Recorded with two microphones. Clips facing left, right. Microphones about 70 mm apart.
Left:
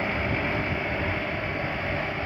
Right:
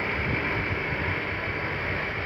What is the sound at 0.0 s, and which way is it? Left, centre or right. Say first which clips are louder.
Vehicle: left 1 dB; centre.